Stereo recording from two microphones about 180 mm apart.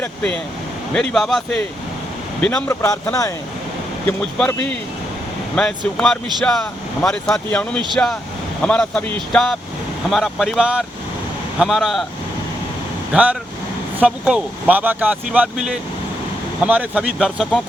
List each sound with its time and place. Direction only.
0.0 s speech: 5° left (ahead or behind)
4.0 s speech: 5° left (ahead or behind)
13.1 s speech: 5° right (ahead or behind)